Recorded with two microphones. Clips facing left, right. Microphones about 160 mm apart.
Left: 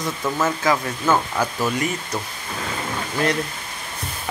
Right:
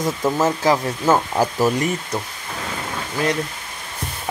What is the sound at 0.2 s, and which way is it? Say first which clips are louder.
Speech: right 3 dB; 40° right (ahead or behind).